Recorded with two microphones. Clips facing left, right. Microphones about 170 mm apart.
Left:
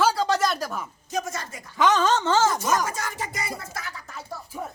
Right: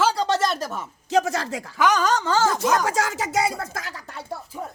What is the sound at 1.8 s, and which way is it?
Speech, 25° left (ahead or behind).